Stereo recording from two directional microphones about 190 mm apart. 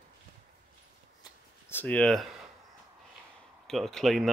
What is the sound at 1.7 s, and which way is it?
Speech, 10° left (ahead or behind).